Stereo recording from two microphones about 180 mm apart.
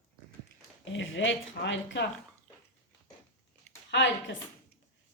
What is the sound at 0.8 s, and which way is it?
A woman's voice, 90° left.